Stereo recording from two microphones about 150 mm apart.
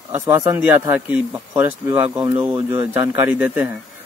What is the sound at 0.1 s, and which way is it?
Speech, 15° right (ahead or behind).